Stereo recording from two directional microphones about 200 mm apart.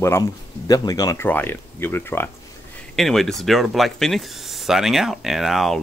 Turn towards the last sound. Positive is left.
turn(degrees=0)  # may be behind; listen again after turning